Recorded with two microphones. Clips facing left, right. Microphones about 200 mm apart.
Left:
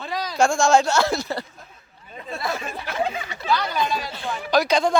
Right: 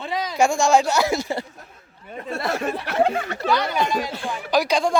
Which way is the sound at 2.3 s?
75° right (ahead or behind).